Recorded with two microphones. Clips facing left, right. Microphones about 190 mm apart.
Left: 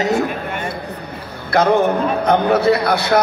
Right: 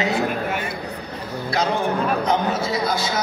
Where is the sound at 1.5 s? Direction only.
55° left (ahead or behind).